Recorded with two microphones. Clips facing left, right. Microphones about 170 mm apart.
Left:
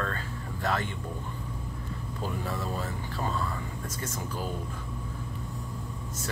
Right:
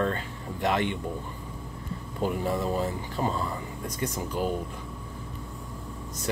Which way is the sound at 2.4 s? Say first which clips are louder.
Right 6 dB; 20° right (ahead or behind).